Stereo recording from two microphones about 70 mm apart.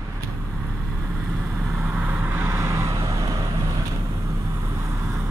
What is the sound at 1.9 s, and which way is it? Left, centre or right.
Vehicle, right.